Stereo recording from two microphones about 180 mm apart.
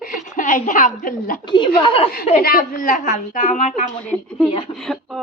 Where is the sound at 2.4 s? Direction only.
55° left (ahead or behind).